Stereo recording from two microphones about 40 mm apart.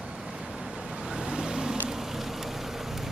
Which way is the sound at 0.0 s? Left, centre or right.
Centre.